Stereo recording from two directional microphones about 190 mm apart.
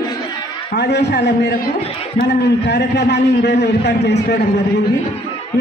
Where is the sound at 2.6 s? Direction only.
60° left (ahead or behind).